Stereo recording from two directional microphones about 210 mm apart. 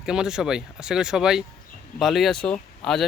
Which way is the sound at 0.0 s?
5° right (ahead or behind).